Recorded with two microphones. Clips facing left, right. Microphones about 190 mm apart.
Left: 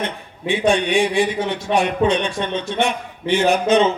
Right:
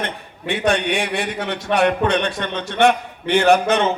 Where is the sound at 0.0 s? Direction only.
60° right (ahead or behind).